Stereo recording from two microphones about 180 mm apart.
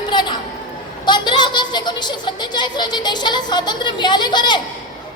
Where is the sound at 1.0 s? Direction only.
25° left (ahead or behind).